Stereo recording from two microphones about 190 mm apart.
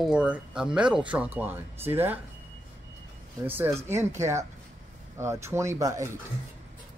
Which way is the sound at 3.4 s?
10° right (ahead or behind).